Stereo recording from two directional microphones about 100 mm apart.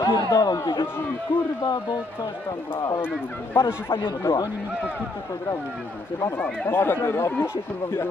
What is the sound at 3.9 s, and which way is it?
Speech, 60° left (ahead or behind).